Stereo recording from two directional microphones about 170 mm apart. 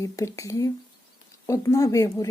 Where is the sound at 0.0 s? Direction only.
15° left (ahead or behind).